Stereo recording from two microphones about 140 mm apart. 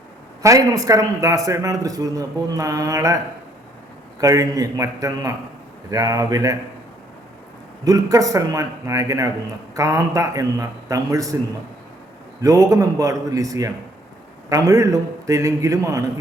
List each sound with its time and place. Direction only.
0.4 s a man's voice: 25° right (ahead or behind)
4.2 s a man's voice: 25° right (ahead or behind)
7.9 s a man's voice: 25° right (ahead or behind)
12.4 s a man's voice: 25° right (ahead or behind)